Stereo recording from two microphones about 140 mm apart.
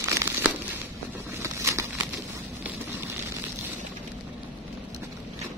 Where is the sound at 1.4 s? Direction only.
20° right (ahead or behind).